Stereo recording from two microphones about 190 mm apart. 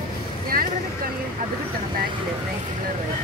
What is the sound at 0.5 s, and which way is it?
Vehicle, 50° right (ahead or behind).